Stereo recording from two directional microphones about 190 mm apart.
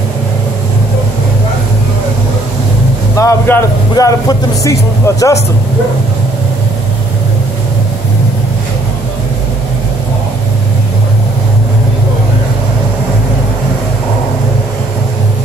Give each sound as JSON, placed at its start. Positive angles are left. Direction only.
{"t": 3.2, "sound": "a man's voice", "side_deg": 15}